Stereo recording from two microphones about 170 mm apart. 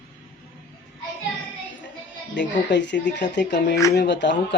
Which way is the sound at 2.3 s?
90° left.